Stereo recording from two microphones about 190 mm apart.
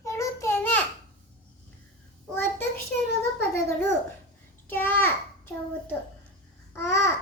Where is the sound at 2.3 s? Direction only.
10° left (ahead or behind).